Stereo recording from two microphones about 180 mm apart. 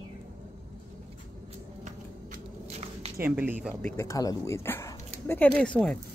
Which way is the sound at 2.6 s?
35° right (ahead or behind).